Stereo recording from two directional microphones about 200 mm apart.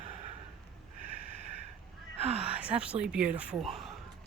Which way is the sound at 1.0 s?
45° left (ahead or behind).